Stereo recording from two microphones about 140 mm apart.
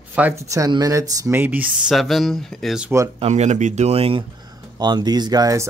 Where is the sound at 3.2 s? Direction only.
55° right (ahead or behind).